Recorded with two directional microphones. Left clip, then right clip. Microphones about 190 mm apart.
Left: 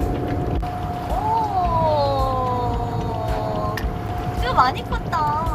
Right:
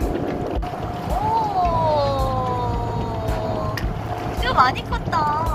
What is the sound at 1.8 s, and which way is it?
Police car, 15° left (ahead or behind).